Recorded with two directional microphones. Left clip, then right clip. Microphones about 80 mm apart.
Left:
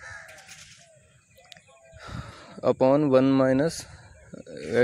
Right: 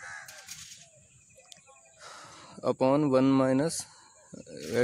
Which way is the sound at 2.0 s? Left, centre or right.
Centre.